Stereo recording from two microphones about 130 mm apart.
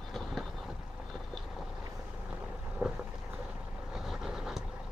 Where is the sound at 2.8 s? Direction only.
15° right (ahead or behind).